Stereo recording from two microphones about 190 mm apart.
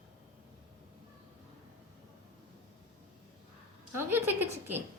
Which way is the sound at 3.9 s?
10° right (ahead or behind).